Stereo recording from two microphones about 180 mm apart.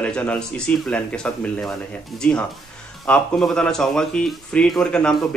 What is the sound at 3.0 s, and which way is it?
Speech, 5° left (ahead or behind).